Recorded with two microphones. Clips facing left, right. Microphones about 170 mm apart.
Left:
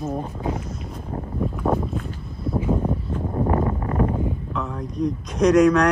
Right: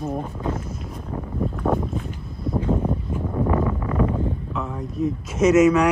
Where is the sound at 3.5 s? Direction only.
35° left (ahead or behind).